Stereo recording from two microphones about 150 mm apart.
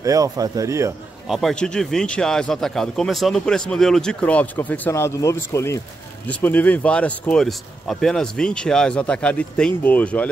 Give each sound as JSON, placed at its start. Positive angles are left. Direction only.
{"t": 0.0, "sound": "speech", "side_deg": -25}
{"t": 1.2, "sound": "speech", "side_deg": 0}